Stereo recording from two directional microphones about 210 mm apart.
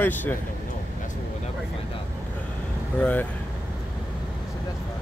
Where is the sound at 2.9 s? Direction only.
5° left (ahead or behind).